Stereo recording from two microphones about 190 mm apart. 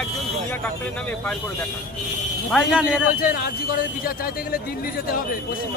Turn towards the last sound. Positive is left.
turn(degrees=50)  # may be behind; listen again after turning